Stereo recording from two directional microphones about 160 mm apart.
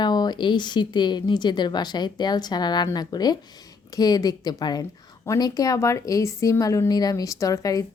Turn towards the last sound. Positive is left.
turn(degrees=20)  # may be behind; listen again after turning